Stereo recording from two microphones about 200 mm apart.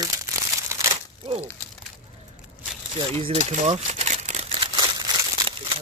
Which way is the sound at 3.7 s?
35° right (ahead or behind).